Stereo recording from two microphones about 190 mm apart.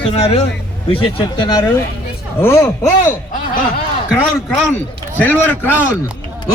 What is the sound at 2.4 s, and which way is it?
Speech, 10° left (ahead or behind).